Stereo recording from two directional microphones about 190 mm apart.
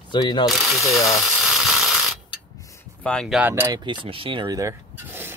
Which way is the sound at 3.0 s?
Centre (ahead or behind).